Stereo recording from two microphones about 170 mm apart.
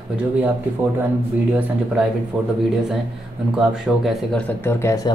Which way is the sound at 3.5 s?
5° right (ahead or behind).